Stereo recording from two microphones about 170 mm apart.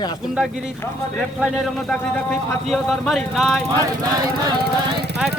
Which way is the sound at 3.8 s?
25° right (ahead or behind).